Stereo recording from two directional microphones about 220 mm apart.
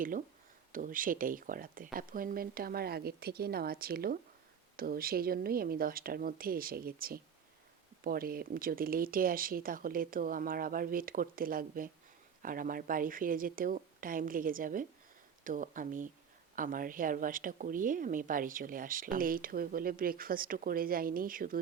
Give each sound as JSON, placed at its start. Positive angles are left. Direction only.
{"t": 0.7, "sound": "speech", "side_deg": -40}